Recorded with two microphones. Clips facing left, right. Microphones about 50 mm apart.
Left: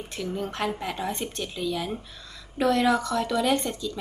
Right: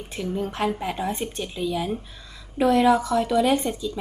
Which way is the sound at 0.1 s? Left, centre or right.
Centre.